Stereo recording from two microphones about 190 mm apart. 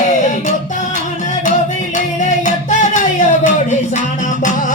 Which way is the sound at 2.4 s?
40° left (ahead or behind).